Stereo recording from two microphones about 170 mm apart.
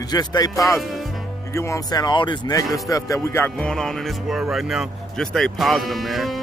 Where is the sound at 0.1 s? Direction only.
25° left (ahead or behind).